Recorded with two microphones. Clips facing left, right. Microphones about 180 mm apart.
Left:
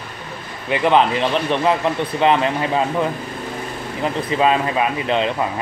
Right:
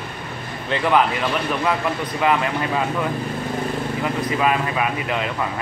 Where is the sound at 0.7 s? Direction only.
20° left (ahead or behind).